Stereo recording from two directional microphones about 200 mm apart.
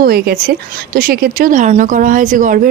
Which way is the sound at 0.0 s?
50° right (ahead or behind).